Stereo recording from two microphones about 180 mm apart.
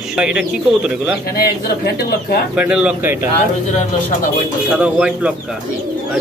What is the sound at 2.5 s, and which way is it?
Speech, 5° right (ahead or behind).